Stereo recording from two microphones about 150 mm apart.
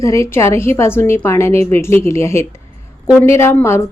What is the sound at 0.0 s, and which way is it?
A woman's voice, 20° left (ahead or behind).